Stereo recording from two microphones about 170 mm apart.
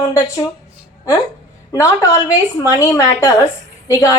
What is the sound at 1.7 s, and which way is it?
A woman's voice, 15° left (ahead or behind).